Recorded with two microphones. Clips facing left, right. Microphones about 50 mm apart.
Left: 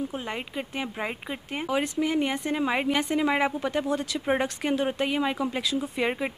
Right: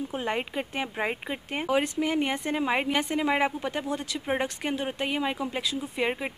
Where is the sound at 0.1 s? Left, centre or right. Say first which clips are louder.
Right 3 dB; right.